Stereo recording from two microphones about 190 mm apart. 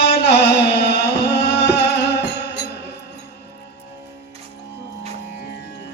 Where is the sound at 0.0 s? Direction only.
65° left (ahead or behind).